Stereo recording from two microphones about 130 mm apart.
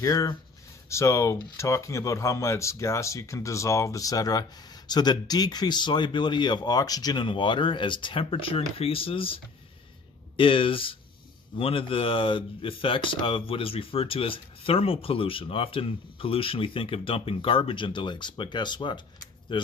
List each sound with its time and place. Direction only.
0.0 s speech: 25° left (ahead or behind)